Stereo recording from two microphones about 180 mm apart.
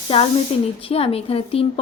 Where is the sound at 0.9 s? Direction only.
35° left (ahead or behind).